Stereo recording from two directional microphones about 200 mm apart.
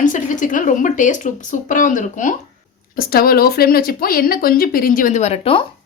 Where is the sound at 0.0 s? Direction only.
40° left (ahead or behind).